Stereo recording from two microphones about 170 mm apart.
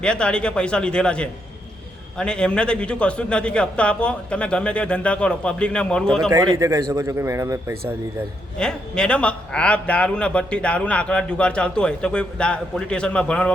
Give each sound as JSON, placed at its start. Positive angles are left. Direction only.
{"t": 0.0, "sound": "a man's voice", "side_deg": 5}
{"t": 6.6, "sound": "a man's voice", "side_deg": -20}
{"t": 8.5, "sound": "a man's voice", "side_deg": 5}